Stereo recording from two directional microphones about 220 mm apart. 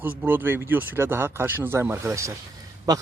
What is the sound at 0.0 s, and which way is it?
Speech, 10° right (ahead or behind).